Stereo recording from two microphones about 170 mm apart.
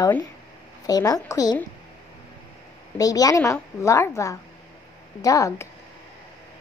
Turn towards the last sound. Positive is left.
turn(degrees=20)  # may be behind; listen again after turning